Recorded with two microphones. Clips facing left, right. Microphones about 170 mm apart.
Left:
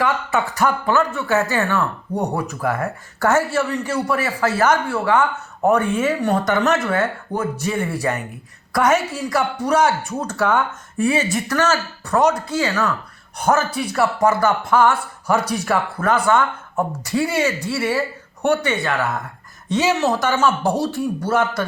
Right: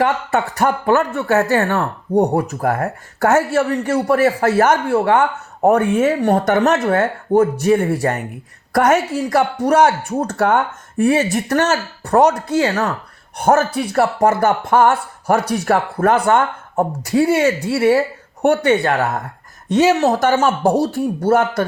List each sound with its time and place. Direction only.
0.0 s speech: 55° right (ahead or behind)
6.0 s speech: 50° right (ahead or behind)